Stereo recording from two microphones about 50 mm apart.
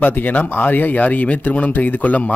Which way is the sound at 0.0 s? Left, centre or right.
Left.